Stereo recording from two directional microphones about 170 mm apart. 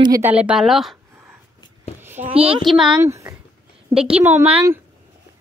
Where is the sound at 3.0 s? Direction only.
15° right (ahead or behind).